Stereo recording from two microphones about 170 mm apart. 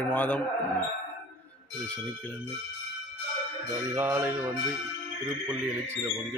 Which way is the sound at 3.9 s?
10° right (ahead or behind).